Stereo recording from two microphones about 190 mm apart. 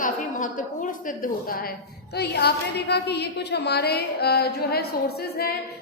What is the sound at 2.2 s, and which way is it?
A woman's voice, 60° left (ahead or behind).